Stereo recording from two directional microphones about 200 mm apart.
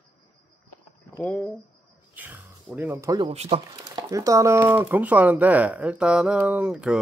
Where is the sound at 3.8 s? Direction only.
15° right (ahead or behind).